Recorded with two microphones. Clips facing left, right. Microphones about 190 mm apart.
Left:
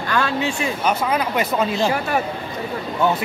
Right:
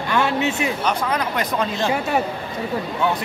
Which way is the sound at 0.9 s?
10° left (ahead or behind).